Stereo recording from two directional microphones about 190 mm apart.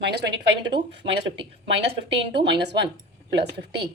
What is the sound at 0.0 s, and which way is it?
Speech, 60° right (ahead or behind).